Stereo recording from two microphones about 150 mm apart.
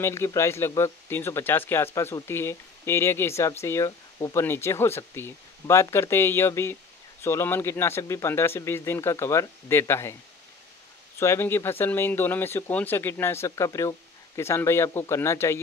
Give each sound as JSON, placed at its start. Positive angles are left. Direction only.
{"t": 0.0, "sound": "speech", "side_deg": 20}
{"t": 11.1, "sound": "speech", "side_deg": 15}